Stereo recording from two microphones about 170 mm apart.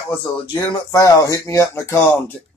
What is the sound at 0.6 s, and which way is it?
Speech, 20° left (ahead or behind).